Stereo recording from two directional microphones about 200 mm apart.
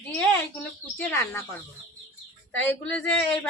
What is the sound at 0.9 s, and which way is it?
Speech, 10° left (ahead or behind).